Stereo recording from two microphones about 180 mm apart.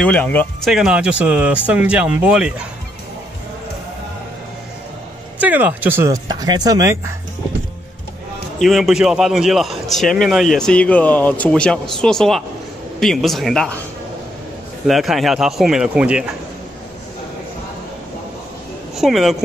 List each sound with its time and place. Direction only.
0.0 s speech: 10° left (ahead or behind)
0.7 s speech: 5° right (ahead or behind)
5.4 s speech: 10° right (ahead or behind)
8.5 s a man's voice: centre (ahead or behind)
14.9 s a man's voice: centre (ahead or behind)
18.9 s a man's voice: centre (ahead or behind)